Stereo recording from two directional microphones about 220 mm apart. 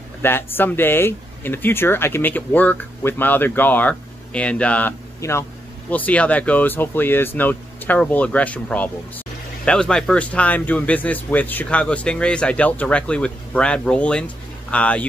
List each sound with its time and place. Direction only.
0.2 s speech: 10° left (ahead or behind)